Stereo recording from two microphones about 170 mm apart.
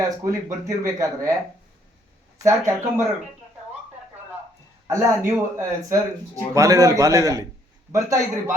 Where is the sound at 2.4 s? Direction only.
15° right (ahead or behind).